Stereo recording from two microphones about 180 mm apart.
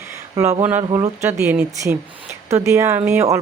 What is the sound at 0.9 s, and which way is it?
Speech, 20° right (ahead or behind).